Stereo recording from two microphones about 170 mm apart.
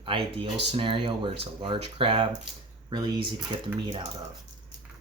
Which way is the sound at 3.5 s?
30° right (ahead or behind).